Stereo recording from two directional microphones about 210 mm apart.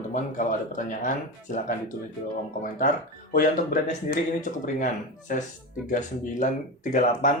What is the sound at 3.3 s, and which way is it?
Speech, 40° left (ahead or behind).